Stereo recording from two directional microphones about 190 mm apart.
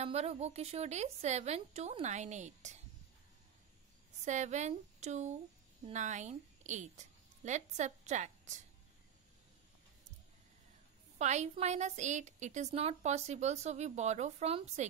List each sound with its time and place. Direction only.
0.0 s a woman's voice: 35° right (ahead or behind)
4.2 s a woman's voice: 40° right (ahead or behind)
11.1 s a woman's voice: 35° right (ahead or behind)